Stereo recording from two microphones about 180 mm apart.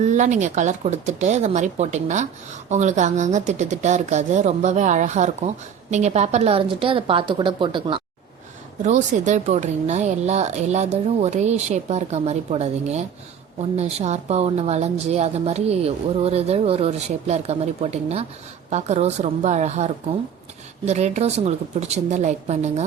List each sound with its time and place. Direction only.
0.0 s a woman's voice: 40° right (ahead or behind)
8.8 s a woman's voice: 40° right (ahead or behind)